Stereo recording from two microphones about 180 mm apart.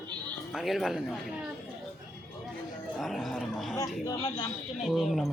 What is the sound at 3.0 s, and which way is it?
Speech, centre (ahead or behind).